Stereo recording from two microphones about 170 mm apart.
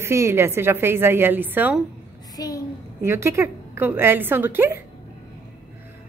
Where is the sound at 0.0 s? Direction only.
15° right (ahead or behind).